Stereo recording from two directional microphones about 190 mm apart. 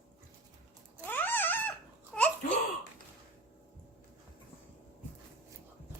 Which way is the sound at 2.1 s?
5° left (ahead or behind).